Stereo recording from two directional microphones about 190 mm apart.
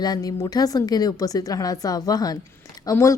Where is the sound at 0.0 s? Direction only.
20° left (ahead or behind).